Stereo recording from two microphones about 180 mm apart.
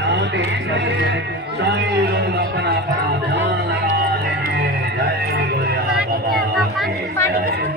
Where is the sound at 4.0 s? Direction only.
60° right (ahead or behind).